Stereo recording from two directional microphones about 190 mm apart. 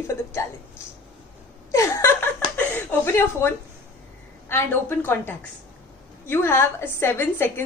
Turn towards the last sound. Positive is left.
turn(degrees=10)  # may be behind; listen again after turning